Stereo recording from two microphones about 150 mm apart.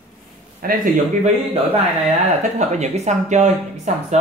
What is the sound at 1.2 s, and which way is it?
A man's voice, 40° right (ahead or behind).